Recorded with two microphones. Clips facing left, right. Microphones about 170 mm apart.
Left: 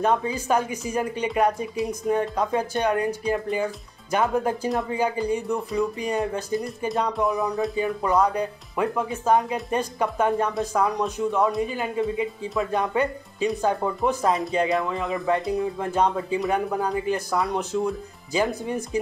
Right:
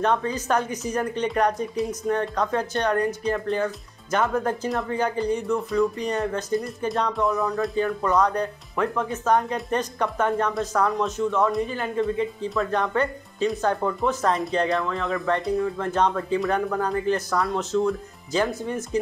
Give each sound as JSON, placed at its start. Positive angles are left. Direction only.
{"t": 0.0, "sound": "speech", "side_deg": 10}
{"t": 7.2, "sound": "speech", "side_deg": 15}